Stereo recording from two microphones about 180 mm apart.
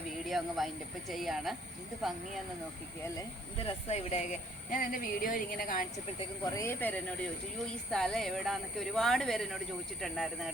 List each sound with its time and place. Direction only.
0.3 s speech: centre (ahead or behind)
3.2 s speech: 30° left (ahead or behind)
4.7 s speech: 50° left (ahead or behind)
6.6 s speech: 10° left (ahead or behind)